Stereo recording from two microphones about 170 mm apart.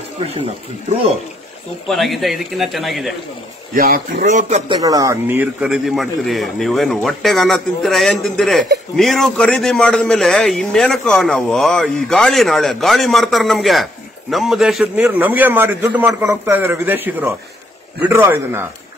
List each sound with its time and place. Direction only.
0.8 s speech: 35° right (ahead or behind)
1.9 s a man's voice: centre (ahead or behind)
3.7 s speech: 55° right (ahead or behind)
4.3 s speech: 45° right (ahead or behind)
4.6 s a man's voice: 20° right (ahead or behind)